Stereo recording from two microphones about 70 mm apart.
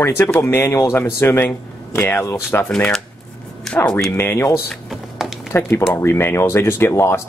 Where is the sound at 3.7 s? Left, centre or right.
Centre.